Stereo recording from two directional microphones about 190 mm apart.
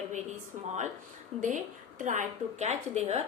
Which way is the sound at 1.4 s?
40° right (ahead or behind).